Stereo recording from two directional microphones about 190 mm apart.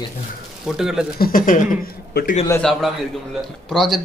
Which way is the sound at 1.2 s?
45° left (ahead or behind).